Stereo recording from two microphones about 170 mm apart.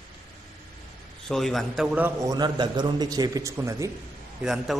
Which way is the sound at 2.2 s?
20° right (ahead or behind).